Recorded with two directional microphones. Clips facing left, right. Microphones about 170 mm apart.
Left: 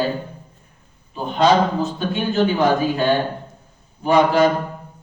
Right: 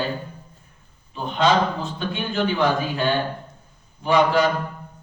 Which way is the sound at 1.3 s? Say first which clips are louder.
Left 4 dB; 40° left (ahead or behind).